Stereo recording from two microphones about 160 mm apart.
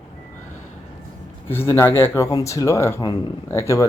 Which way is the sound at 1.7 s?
15° left (ahead or behind).